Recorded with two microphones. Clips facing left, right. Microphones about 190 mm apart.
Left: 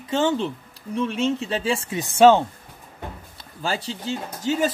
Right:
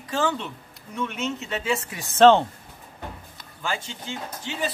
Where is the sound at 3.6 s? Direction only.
35° left (ahead or behind).